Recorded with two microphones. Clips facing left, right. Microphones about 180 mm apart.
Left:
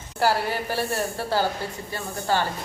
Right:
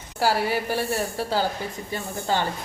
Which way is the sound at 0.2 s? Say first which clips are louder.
Even; 10° right (ahead or behind).